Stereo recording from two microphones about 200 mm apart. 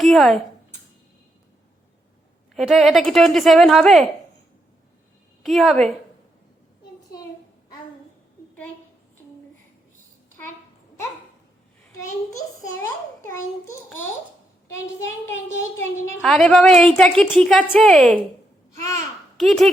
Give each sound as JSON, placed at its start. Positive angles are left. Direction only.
{"t": 0.0, "sound": "speech", "side_deg": 0}
{"t": 2.6, "sound": "a woman's voice", "side_deg": 0}
{"t": 5.4, "sound": "a woman's voice", "side_deg": 0}
{"t": 12.8, "sound": "a child's voice", "side_deg": 10}
{"t": 16.2, "sound": "a woman's voice", "side_deg": 0}
{"t": 18.8, "sound": "a child's voice", "side_deg": 15}
{"t": 19.4, "sound": "a woman's voice", "side_deg": 0}